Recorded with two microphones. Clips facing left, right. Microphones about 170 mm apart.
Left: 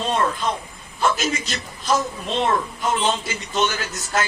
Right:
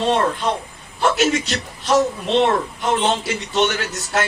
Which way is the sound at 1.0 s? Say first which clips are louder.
Right 4 dB; 75° right (ahead or behind).